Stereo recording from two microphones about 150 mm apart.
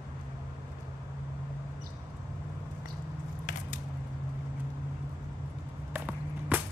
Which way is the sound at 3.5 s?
60° left (ahead or behind).